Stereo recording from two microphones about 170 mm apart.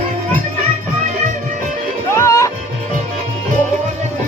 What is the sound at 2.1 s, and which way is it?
Music, 20° left (ahead or behind).